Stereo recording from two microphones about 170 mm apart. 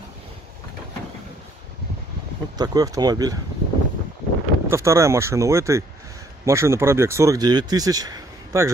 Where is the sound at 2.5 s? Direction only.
20° right (ahead or behind).